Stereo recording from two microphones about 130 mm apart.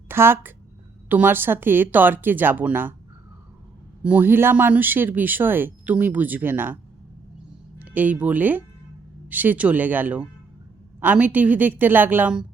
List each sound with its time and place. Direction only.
0.1 s speech: 15° right (ahead or behind)
4.0 s speech: 10° right (ahead or behind)
7.8 s speech: 15° right (ahead or behind)